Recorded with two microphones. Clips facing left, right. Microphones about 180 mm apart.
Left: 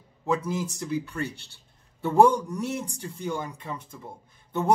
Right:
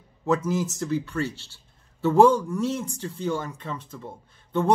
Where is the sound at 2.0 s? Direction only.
15° left (ahead or behind).